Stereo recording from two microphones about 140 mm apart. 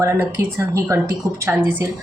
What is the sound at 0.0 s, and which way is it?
Speech, 20° right (ahead or behind).